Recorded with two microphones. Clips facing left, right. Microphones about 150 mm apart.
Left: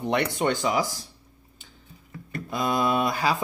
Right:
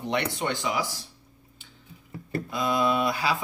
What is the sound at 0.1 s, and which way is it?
Speech, 45° left (ahead or behind).